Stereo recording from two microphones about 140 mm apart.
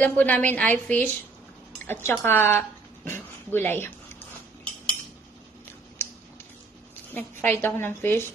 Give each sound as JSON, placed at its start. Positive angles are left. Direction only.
{"t": 0.0, "sound": "a woman's voice", "side_deg": 10}
{"t": 7.2, "sound": "a woman's voice", "side_deg": 15}